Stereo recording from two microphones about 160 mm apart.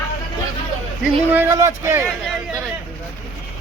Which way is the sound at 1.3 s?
15° right (ahead or behind).